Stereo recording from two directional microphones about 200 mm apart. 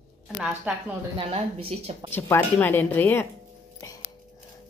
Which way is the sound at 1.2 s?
30° right (ahead or behind).